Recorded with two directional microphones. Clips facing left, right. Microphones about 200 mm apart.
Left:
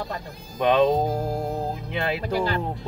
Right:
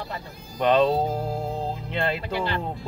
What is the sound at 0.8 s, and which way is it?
Music, 15° left (ahead or behind).